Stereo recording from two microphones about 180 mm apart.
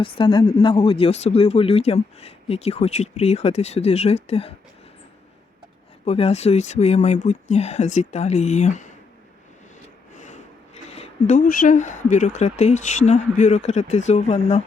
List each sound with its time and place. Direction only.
0.0 s speech: 30° left (ahead or behind)
6.1 s speech: 35° left (ahead or behind)
10.2 s a sound: 40° left (ahead or behind)
10.8 s speech: 35° left (ahead or behind)